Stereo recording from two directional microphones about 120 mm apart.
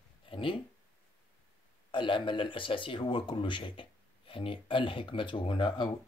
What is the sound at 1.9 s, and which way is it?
Speech, 45° left (ahead or behind).